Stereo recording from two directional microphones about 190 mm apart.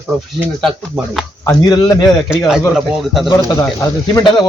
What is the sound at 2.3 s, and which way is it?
Speech, centre (ahead or behind).